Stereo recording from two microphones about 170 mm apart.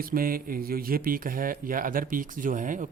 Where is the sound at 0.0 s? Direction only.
60° right (ahead or behind).